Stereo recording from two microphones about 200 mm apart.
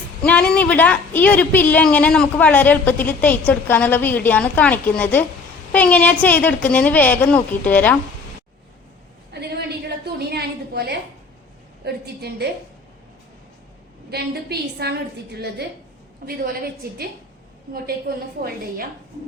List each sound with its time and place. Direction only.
0.2 s a woman's voice: 5° left (ahead or behind)
9.3 s a sound: 55° right (ahead or behind)
11.9 s a woman's voice: 55° right (ahead or behind)
14.1 s a woman's voice: 50° right (ahead or behind)